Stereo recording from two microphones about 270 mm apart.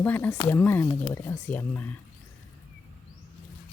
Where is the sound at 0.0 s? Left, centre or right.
Centre.